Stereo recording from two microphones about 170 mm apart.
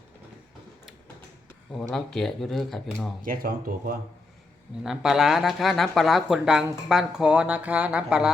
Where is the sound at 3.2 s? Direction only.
55° right (ahead or behind).